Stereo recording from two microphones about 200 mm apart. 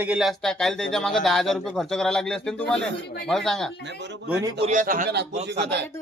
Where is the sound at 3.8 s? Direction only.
60° right (ahead or behind).